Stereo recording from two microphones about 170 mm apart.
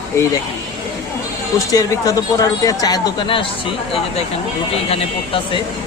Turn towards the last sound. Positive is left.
turn(degrees=30)  # may be behind; listen again after turning